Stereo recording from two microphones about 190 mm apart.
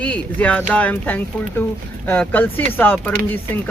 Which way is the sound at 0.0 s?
5° left (ahead or behind).